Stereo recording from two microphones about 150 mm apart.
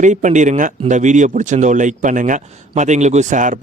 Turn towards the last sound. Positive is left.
turn(degrees=-55)  # may be behind; listen again after turning